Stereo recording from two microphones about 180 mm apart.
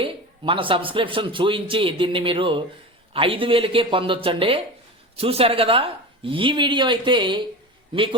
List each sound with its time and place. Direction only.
0.0 s a man's voice: 30° right (ahead or behind)